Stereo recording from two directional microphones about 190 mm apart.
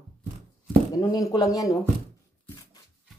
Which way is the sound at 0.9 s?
20° left (ahead or behind).